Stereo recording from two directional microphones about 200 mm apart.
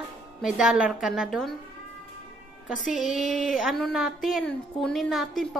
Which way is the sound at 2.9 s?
40° left (ahead or behind).